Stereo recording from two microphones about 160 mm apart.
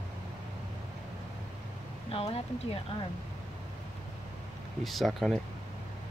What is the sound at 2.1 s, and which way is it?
Speech, 35° left (ahead or behind).